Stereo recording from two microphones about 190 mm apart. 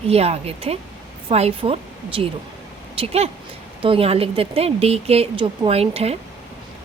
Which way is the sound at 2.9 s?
30° right (ahead or behind).